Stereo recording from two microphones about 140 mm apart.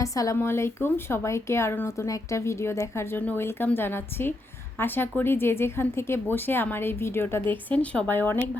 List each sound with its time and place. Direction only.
0.0 s speech: 25° left (ahead or behind)